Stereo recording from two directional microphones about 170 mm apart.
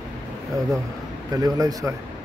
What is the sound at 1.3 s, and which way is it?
Speech, 20° right (ahead or behind).